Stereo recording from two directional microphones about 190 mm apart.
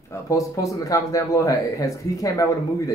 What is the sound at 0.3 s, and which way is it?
Speech, 15° left (ahead or behind).